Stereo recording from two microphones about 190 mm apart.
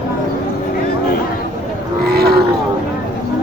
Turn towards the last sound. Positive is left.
turn(degrees=-55)  # may be behind; listen again after turning